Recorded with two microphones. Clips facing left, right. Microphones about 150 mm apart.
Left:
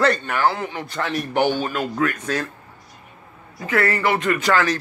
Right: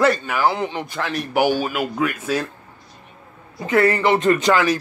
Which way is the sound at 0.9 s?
Centre (ahead or behind).